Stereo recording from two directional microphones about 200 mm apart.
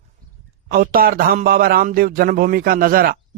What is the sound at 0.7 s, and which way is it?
A man's voice, 45° right (ahead or behind).